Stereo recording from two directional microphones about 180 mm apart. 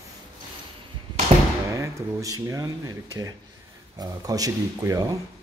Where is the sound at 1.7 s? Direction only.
20° right (ahead or behind).